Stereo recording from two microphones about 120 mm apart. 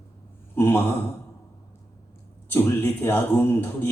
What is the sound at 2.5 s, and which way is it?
Speech, 20° left (ahead or behind).